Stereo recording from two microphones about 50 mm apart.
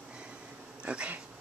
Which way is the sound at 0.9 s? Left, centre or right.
Right.